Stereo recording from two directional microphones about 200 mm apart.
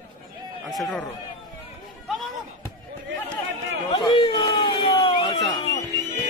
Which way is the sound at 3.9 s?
25° left (ahead or behind).